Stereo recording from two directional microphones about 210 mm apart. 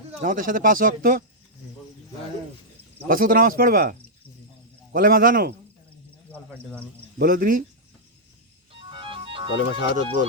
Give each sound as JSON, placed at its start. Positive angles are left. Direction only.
{"t": 0.2, "sound": "speech", "side_deg": -40}
{"t": 3.1, "sound": "a man's voice", "side_deg": -45}
{"t": 7.2, "sound": "speech", "side_deg": -40}
{"t": 8.9, "sound": "music", "side_deg": -25}
{"t": 9.9, "sound": "speech", "side_deg": -40}